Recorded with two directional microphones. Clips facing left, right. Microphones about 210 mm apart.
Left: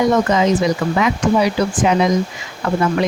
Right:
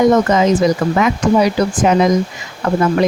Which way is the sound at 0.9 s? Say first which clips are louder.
Right 2 dB; 45° right (ahead or behind).